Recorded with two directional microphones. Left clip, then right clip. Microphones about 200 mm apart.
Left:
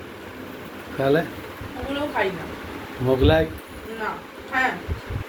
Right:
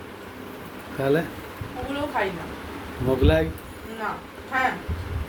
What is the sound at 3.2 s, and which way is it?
Speech, 15° right (ahead or behind).